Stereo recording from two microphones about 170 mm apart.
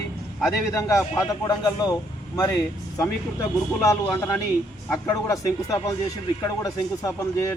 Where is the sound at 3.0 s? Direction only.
15° left (ahead or behind).